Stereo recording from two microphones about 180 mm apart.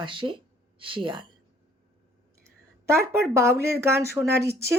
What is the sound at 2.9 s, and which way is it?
A woman's voice, 15° right (ahead or behind).